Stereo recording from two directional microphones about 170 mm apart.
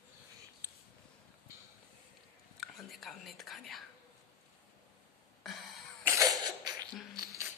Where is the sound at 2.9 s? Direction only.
Centre (ahead or behind).